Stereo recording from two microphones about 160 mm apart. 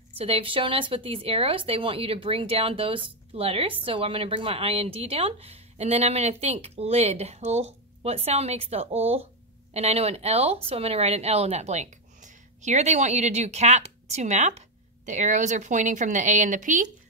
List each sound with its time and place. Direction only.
0.2 s speech: 35° right (ahead or behind); by 16.9 s 50° right (ahead or behind)